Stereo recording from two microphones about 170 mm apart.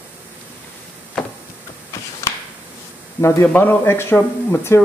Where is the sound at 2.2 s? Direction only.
15° left (ahead or behind).